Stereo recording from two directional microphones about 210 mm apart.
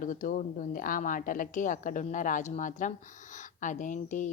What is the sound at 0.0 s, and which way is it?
A woman's voice, 40° left (ahead or behind).